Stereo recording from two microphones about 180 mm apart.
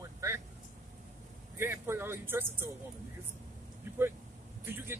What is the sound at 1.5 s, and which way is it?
Speech, 15° right (ahead or behind).